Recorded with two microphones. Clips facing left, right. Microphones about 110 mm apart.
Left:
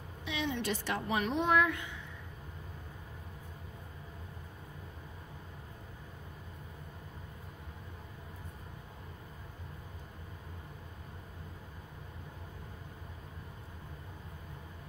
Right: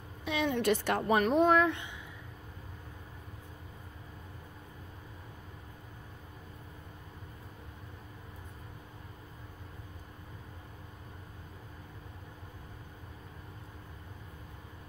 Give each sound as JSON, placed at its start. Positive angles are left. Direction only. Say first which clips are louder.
{"t": 0.2, "sound": "a woman's voice", "louder": "right 5 dB", "side_deg": -50}